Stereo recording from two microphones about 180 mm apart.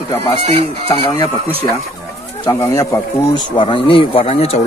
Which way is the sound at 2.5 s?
15° left (ahead or behind).